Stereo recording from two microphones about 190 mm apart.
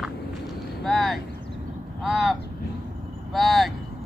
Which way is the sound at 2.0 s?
Centre (ahead or behind).